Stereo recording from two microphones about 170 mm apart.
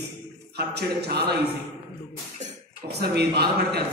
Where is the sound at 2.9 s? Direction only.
70° right (ahead or behind).